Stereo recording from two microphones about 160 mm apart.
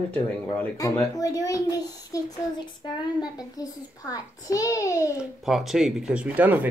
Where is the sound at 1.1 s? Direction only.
20° left (ahead or behind).